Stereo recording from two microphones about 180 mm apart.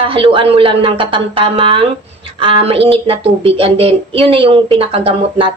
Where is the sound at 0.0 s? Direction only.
30° right (ahead or behind).